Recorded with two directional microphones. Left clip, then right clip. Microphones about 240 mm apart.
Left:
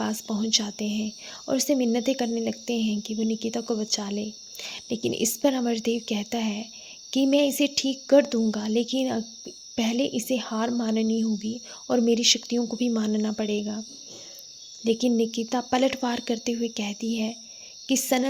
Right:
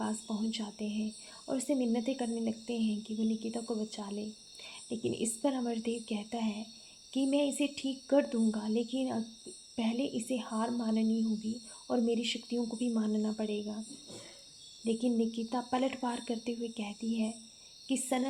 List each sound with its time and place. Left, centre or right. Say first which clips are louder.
0.0 s speech: left 8 dB; left
14.8 s speech: left 9 dB; left